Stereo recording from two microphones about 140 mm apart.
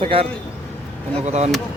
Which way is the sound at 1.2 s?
55° right (ahead or behind).